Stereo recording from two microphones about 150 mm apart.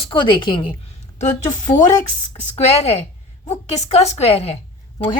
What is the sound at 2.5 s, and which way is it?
A woman's voice, 45° left (ahead or behind).